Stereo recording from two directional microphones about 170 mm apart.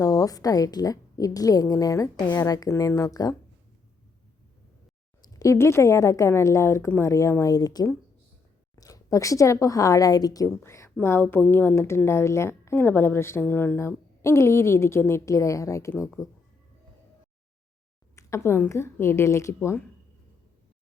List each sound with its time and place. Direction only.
0.0 s a woman's voice: 20° left (ahead or behind)
5.2 s speech: 20° left (ahead or behind)
18.2 s speech: 15° left (ahead or behind)